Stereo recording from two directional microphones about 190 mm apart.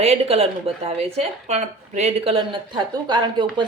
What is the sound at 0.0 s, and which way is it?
A woman's voice, 35° right (ahead or behind).